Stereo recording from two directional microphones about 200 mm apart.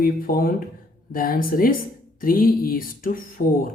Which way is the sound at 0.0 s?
45° left (ahead or behind).